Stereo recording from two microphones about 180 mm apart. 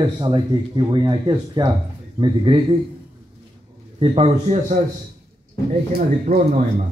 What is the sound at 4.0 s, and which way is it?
Speech, 35° right (ahead or behind).